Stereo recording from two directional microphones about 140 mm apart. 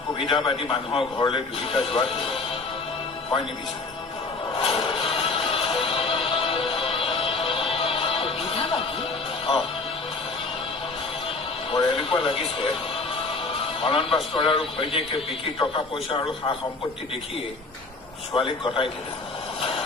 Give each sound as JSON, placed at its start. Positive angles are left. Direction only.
{"t": 0.2, "sound": "a man's voice", "side_deg": 35}
{"t": 4.5, "sound": "music", "side_deg": 40}
{"t": 11.7, "sound": "a man's voice", "side_deg": 40}
{"t": 13.5, "sound": "music", "side_deg": 40}
{"t": 14.3, "sound": "a man's voice", "side_deg": 40}
{"t": 18.3, "sound": "a man's voice", "side_deg": 35}